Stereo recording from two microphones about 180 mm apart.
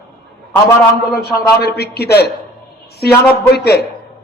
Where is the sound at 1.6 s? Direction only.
65° left (ahead or behind).